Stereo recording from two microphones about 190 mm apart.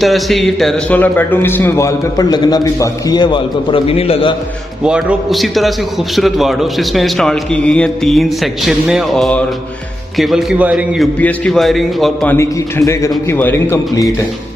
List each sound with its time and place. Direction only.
0.0 s a man's voice: centre (ahead or behind); by 4.4 s 30° left (ahead or behind)
4.8 s a man's voice: centre (ahead or behind)
12.4 s a man's voice: 15° left (ahead or behind)